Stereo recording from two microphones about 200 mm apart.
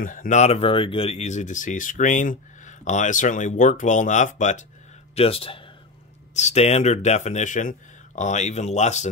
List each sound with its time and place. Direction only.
0.0 s speech: 40° left (ahead or behind)